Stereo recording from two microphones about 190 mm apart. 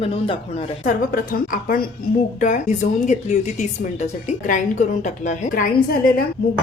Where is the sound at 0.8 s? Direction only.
45° left (ahead or behind).